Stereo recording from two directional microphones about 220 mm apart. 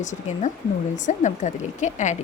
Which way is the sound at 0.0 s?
35° left (ahead or behind).